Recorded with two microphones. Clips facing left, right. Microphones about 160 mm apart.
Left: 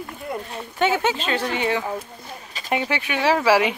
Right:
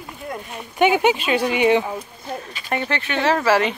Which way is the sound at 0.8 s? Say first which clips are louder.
Right 4 dB; 15° right (ahead or behind).